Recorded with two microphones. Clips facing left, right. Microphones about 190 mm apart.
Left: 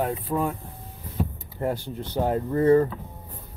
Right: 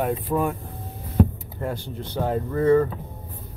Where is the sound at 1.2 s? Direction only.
65° right (ahead or behind).